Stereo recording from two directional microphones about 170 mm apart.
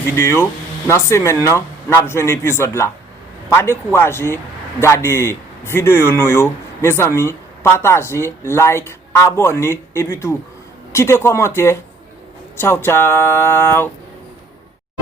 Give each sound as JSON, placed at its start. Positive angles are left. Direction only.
{"t": 0.2, "sound": "speech", "side_deg": 15}